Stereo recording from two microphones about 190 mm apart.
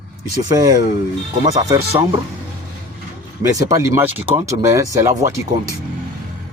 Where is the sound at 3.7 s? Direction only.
15° right (ahead or behind).